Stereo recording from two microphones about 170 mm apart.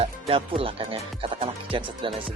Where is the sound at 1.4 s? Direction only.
30° right (ahead or behind).